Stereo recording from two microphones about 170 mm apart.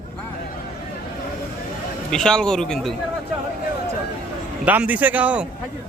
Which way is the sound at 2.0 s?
5° left (ahead or behind).